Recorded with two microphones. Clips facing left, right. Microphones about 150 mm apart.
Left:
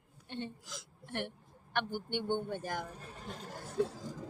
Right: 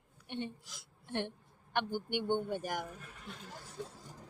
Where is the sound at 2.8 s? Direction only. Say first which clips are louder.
Left 2 dB; 35° left (ahead or behind); by 3.8 s 50° left (ahead or behind).